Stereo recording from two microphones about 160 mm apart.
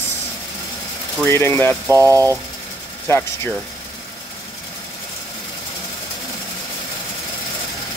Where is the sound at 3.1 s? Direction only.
15° left (ahead or behind).